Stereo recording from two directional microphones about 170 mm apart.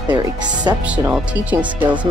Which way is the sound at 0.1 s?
25° right (ahead or behind).